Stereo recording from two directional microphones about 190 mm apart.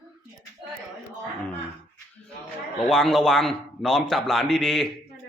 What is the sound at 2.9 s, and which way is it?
A man's voice, centre (ahead or behind).